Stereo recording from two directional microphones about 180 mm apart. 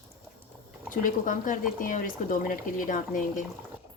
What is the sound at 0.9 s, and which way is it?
Speech, 45° left (ahead or behind).